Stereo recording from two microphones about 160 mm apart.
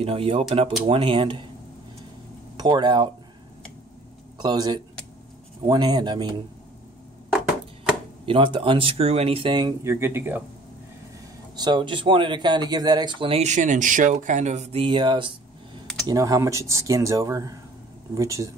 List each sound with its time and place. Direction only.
0.0 s speech: 35° right (ahead or behind)
2.5 s speech: 25° right (ahead or behind)
4.4 s speech: 25° right (ahead or behind)
8.3 s speech: 30° right (ahead or behind)
9.8 s speech: 15° right (ahead or behind)
11.5 s speech: 25° right (ahead or behind)